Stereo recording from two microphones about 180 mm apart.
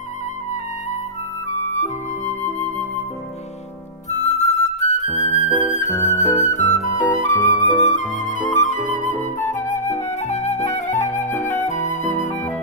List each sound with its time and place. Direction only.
1.5 s flute: 40° left (ahead or behind)
4.1 s music: 40° left (ahead or behind)
10.0 s flute: 40° left (ahead or behind)